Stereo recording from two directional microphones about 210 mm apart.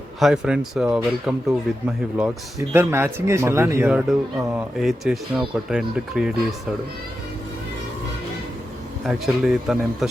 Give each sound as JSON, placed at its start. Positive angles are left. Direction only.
{"t": 0.2, "sound": "speech", "side_deg": -5}
{"t": 9.0, "sound": "speech", "side_deg": 0}